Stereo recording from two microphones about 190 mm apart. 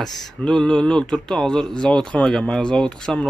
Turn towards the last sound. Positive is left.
turn(degrees=5)  # may be behind; listen again after turning